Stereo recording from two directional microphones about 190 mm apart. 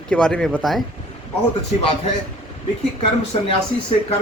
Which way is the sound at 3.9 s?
35° left (ahead or behind).